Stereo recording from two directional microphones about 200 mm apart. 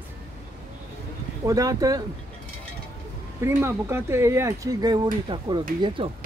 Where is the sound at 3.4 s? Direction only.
15° right (ahead or behind).